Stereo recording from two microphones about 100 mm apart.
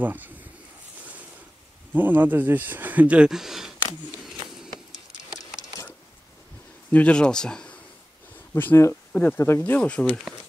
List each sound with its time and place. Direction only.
0.0 s a sound: 20° right (ahead or behind)
2.0 s speech: 20° right (ahead or behind)
5.3 s a sound: 35° left (ahead or behind)
6.9 s speech: 15° left (ahead or behind)
8.5 s speech: 25° left (ahead or behind)
9.8 s speech: 10° left (ahead or behind)